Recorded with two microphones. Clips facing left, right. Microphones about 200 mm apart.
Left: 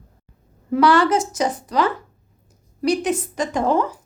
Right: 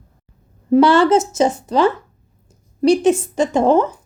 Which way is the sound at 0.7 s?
25° right (ahead or behind).